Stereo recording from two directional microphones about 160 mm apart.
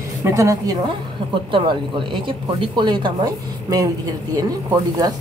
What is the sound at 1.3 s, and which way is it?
Speech, 30° right (ahead or behind).